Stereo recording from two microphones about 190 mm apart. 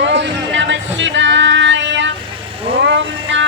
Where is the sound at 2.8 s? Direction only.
70° right (ahead or behind).